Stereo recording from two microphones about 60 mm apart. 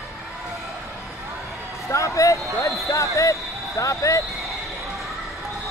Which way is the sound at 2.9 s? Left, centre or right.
Left.